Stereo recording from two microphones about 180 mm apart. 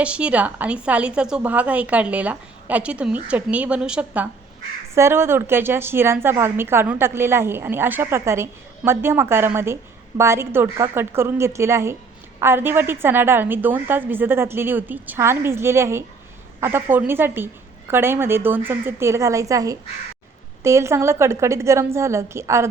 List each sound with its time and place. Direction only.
0.0 s a woman's voice: 5° right (ahead or behind)